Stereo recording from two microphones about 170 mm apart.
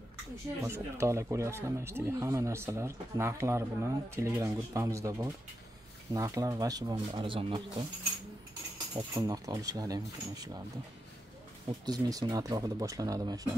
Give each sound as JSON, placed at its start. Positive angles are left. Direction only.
{"t": 0.6, "sound": "speech", "side_deg": -15}
{"t": 8.9, "sound": "speech", "side_deg": -25}
{"t": 11.6, "sound": "speech", "side_deg": -20}